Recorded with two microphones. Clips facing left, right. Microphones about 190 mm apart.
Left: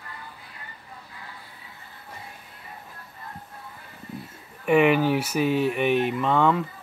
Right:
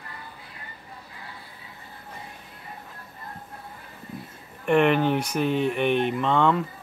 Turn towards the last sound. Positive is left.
turn(degrees=5)  # may be behind; listen again after turning